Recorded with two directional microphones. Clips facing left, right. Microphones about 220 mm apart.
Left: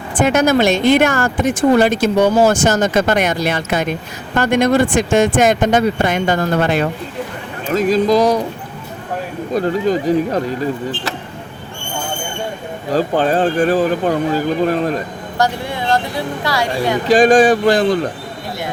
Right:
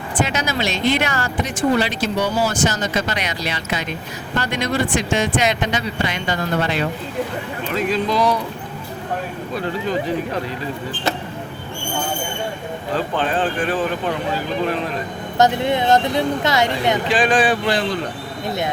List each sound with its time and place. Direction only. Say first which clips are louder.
0.2 s speech: left 9 dB; 50° left (ahead or behind)
9.5 s speech: left 8 dB; 40° left (ahead or behind)
12.9 s speech: left 7 dB; 40° left (ahead or behind)
15.4 s speech: right 3 dB; 20° right (ahead or behind)
17.1 s speech: left 10 dB; 45° left (ahead or behind)